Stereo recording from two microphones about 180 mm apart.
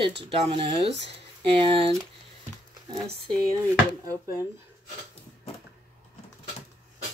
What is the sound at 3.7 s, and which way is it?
Speech, 15° right (ahead or behind).